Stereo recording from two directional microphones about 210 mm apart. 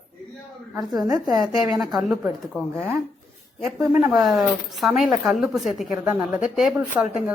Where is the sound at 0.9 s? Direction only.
20° right (ahead or behind).